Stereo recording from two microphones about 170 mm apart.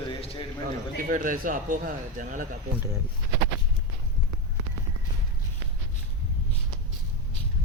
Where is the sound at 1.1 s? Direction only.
55° right (ahead or behind).